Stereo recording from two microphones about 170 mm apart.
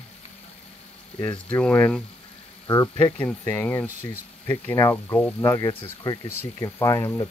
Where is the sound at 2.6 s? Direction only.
25° left (ahead or behind).